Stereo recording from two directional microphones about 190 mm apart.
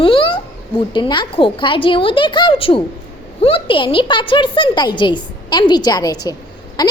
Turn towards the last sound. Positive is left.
turn(degrees=20)  # may be behind; listen again after turning